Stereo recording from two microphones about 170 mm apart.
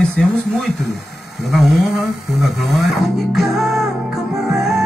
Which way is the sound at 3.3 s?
Centre (ahead or behind).